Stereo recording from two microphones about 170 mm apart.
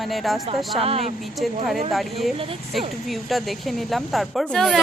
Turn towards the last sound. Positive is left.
turn(degrees=0)  # may be behind; listen again after turning